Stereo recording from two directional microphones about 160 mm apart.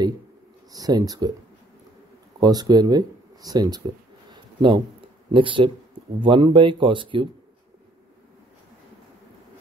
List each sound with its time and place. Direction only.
0.7 s speech: 25° right (ahead or behind)
2.4 s speech: 25° right (ahead or behind)